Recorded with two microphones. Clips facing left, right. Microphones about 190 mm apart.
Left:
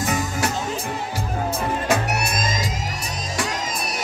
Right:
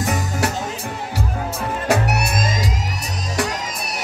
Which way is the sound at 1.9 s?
65° right (ahead or behind).